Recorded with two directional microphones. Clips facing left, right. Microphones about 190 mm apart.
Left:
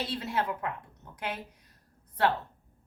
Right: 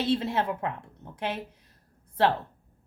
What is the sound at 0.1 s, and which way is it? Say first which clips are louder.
A woman's voice: right 6 dB; 25° right (ahead or behind).